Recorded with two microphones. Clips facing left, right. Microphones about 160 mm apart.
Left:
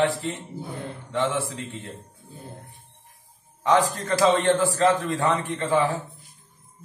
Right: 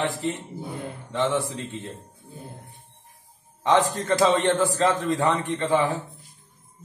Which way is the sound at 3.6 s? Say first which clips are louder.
Even; 20° right (ahead or behind).